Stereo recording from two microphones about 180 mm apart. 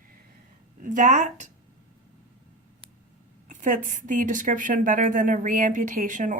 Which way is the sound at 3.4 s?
45° right (ahead or behind).